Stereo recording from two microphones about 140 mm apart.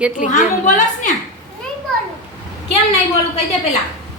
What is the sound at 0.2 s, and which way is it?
Speech, 65° left (ahead or behind).